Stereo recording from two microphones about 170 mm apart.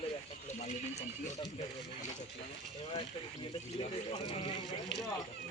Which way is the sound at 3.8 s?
40° left (ahead or behind).